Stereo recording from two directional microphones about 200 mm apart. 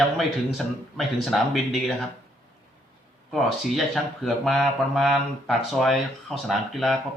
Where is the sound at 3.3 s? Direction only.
Centre (ahead or behind).